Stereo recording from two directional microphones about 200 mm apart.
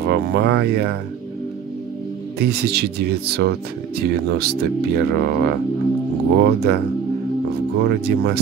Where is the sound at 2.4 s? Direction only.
55° right (ahead or behind).